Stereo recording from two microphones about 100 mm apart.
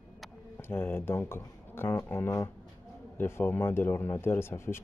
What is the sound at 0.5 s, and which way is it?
Speech, 20° left (ahead or behind).